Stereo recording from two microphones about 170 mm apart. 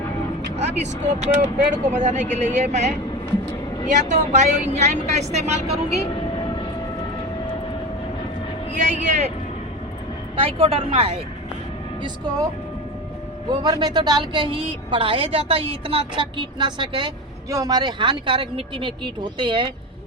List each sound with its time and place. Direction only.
0.5 s a woman's voice: 40° right (ahead or behind)
6.4 s vehicle: 30° left (ahead or behind)
8.7 s speech: 45° right (ahead or behind)
10.4 s a woman's voice: 35° right (ahead or behind)
13.5 s a woman's voice: 25° right (ahead or behind)